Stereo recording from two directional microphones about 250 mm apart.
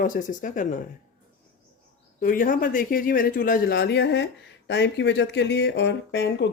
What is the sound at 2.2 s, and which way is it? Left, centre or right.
Speech, left.